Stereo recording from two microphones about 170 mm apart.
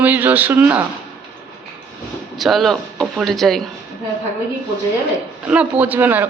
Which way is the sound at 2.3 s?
Centre (ahead or behind).